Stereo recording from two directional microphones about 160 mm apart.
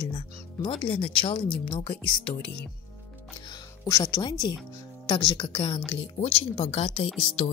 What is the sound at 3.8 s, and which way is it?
Speech, 25° left (ahead or behind).